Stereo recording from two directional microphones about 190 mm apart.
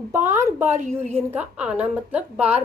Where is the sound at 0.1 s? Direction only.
15° right (ahead or behind).